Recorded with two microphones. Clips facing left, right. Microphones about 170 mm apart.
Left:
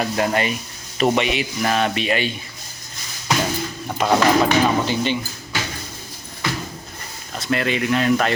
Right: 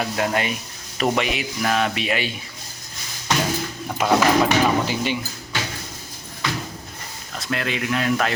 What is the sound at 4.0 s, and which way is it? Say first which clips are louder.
A man's voice: left 1 dB; 5° right (ahead or behind).